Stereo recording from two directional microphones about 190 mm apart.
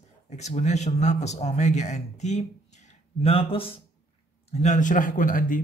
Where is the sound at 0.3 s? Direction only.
35° left (ahead or behind).